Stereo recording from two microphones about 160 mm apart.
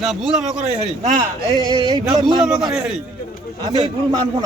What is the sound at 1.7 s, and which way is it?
Speech, 25° right (ahead or behind).